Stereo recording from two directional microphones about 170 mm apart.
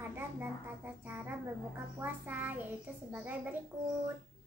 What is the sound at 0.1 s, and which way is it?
A woman's voice, 10° right (ahead or behind).